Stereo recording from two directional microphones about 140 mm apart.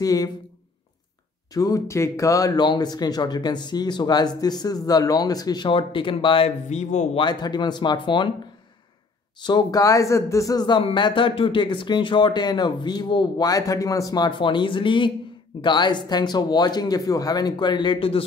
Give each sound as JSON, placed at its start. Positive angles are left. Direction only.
{"t": 0.0, "sound": "speech", "side_deg": 25}
{"t": 1.5, "sound": "speech", "side_deg": 25}
{"t": 6.7, "sound": "speech", "side_deg": 55}
{"t": 7.2, "sound": "speech", "side_deg": 30}
{"t": 9.4, "sound": "speech", "side_deg": 30}
{"t": 10.8, "sound": "speech", "side_deg": 40}